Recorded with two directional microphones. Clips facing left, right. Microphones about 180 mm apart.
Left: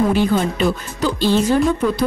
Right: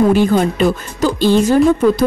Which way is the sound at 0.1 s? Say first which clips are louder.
Right 4 dB; 45° right (ahead or behind).